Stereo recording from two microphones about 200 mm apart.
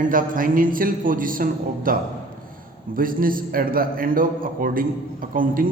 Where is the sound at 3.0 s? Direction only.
45° right (ahead or behind).